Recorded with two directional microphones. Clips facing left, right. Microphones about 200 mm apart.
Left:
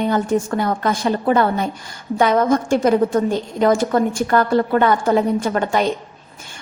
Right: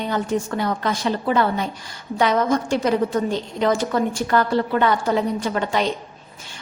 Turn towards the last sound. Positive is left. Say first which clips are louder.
# left 3 dB
turn(degrees=50)  # may be behind; listen again after turning